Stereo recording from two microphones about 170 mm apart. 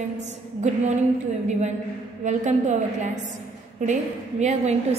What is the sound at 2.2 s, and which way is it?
A woman's voice, 45° right (ahead or behind).